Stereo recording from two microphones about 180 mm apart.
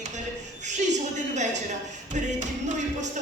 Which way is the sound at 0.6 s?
40° right (ahead or behind).